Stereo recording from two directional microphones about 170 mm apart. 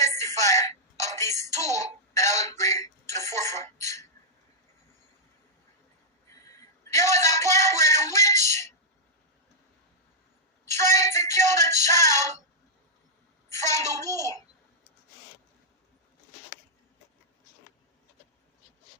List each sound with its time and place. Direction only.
0.0 s music: 15° left (ahead or behind)
1.7 s a sound: 15° left (ahead or behind)
6.4 s a sound: 15° left (ahead or behind)
7.8 s music: 15° left (ahead or behind)
10.7 s music: 15° left (ahead or behind)
13.5 s child singing: 15° left (ahead or behind)